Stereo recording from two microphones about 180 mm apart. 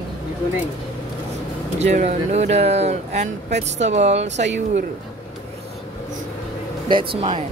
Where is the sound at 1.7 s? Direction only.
40° right (ahead or behind).